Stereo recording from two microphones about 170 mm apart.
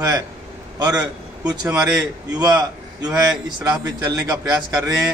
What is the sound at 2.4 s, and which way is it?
A man's voice, 20° right (ahead or behind).